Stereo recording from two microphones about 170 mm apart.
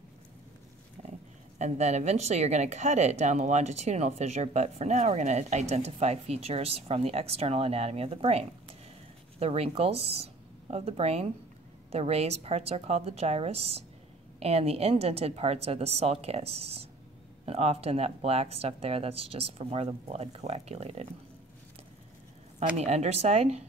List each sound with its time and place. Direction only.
1.0 s pig: 45° right (ahead or behind)
1.6 s speech: 40° right (ahead or behind)
22.8 s speech: 40° right (ahead or behind)